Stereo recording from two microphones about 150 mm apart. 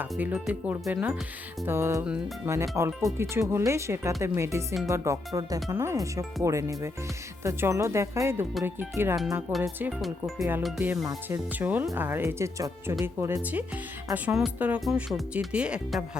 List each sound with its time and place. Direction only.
0.0 s speech: 10° right (ahead or behind)
10.0 s speech: centre (ahead or behind)
10.8 s speech: 25° right (ahead or behind)
11.6 s speech: 10° right (ahead or behind)
13.4 s speech: 10° right (ahead or behind)